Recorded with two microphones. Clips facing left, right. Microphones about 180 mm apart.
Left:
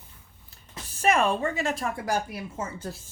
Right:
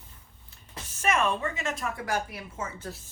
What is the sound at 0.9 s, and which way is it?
A woman's voice, 35° left (ahead or behind).